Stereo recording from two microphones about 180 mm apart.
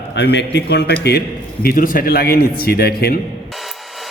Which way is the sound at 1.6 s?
50° left (ahead or behind).